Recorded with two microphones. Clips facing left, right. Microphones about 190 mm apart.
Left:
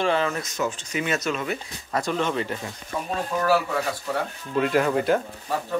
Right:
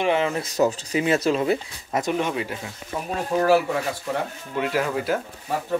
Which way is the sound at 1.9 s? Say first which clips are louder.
Right 1 dB; 20° right (ahead or behind).